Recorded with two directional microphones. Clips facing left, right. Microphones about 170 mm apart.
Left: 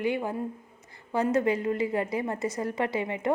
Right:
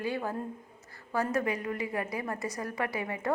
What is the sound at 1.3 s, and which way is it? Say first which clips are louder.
A woman's voice: left 6 dB; 25° left (ahead or behind).